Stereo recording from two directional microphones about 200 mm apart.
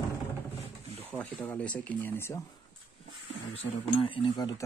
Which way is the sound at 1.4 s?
5° left (ahead or behind).